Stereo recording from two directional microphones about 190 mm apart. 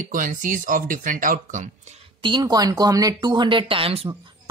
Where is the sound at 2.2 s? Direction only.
25° right (ahead or behind).